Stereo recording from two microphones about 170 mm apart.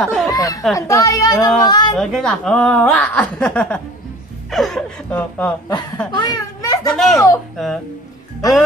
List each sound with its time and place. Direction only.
0.0 s speech: 5° left (ahead or behind)
0.3 s a woman's voice: 20° left (ahead or behind)
2.0 s speech: 5° left (ahead or behind)
6.1 s a child's voice: 25° left (ahead or behind)
6.9 s speech: centre (ahead or behind)